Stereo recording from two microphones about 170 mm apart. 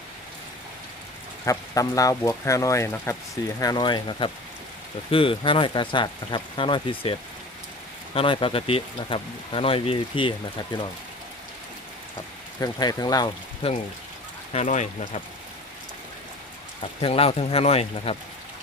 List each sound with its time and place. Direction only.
1.5 s speech: 20° left (ahead or behind)
12.5 s speech: 20° left (ahead or behind)
13.6 s speech: 35° left (ahead or behind)
17.0 s speech: 35° left (ahead or behind)